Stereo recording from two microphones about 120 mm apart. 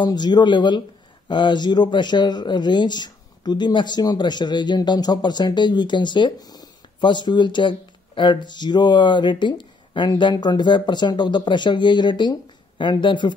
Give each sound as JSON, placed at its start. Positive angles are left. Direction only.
{"t": 0.0, "sound": "speech", "side_deg": 35}